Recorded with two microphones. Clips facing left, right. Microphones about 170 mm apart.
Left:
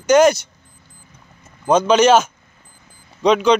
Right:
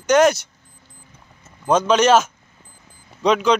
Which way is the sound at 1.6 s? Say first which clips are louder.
Left 3 dB; centre (ahead or behind).